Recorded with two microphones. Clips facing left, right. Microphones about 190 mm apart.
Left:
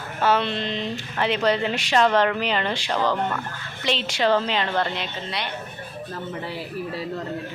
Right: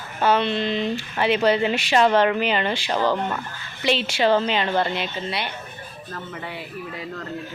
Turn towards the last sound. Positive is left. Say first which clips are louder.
# left 4 dB
turn(degrees=35)  # may be behind; listen again after turning